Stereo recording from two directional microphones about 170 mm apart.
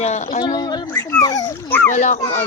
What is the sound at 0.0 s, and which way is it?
Speech, 45° left (ahead or behind).